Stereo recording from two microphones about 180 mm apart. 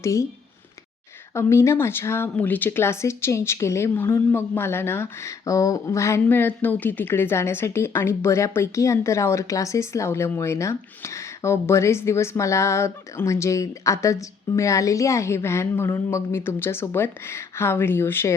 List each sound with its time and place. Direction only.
0.0 s speech: 15° left (ahead or behind)
1.3 s speech: 15° left (ahead or behind)